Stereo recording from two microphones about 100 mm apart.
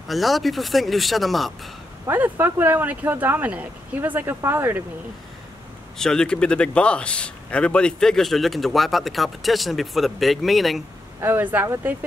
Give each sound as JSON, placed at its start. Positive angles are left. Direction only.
{"t": 0.1, "sound": "speech", "side_deg": 0}
{"t": 2.0, "sound": "speech", "side_deg": -20}
{"t": 5.9, "sound": "speech", "side_deg": 5}
{"t": 11.1, "sound": "speech", "side_deg": -20}
{"t": 11.6, "sound": "speech", "side_deg": -30}